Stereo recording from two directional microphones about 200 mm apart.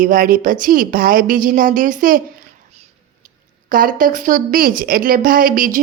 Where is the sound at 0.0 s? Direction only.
45° right (ahead or behind).